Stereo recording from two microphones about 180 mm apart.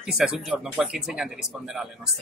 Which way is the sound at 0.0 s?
5° right (ahead or behind).